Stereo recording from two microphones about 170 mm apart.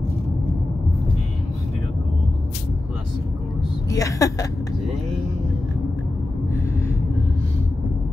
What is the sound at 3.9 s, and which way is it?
Speech, 20° left (ahead or behind).